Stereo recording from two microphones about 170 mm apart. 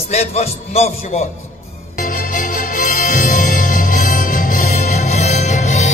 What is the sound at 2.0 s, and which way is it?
Music, 55° left (ahead or behind).